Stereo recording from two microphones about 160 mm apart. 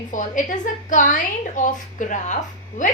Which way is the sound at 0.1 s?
50° left (ahead or behind).